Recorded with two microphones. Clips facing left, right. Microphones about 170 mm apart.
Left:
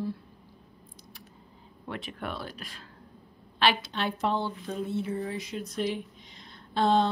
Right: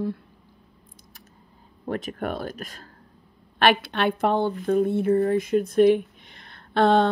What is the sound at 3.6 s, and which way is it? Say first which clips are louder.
A woman's voice: right 6 dB; 60° right (ahead or behind).